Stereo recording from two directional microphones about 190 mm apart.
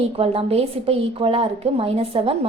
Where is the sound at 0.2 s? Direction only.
30° right (ahead or behind).